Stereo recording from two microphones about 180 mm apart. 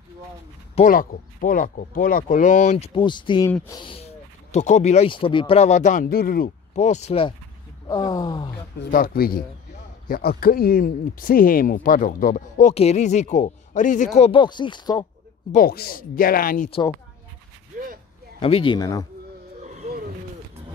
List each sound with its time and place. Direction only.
0.7 s speech: 50° left (ahead or behind); by 3.4 s 25° left (ahead or behind)
3.4 s speech: 15° left (ahead or behind)
3.8 s speech: 35° left (ahead or behind)
6.0 s speech: 55° left (ahead or behind)
6.8 s speech: 40° left (ahead or behind)
7.9 s speech: 20° left (ahead or behind)
8.9 s speech: 55° left (ahead or behind); by 15.0 s 25° left (ahead or behind)
15.5 s speech: 55° left (ahead or behind)
18.4 s speech: 30° left (ahead or behind)